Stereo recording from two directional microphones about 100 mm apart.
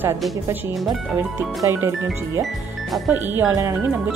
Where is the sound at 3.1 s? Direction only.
20° right (ahead or behind).